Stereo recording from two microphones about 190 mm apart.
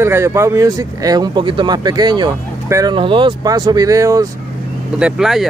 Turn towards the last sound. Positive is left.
turn(degrees=0)  # may be behind; listen again after turning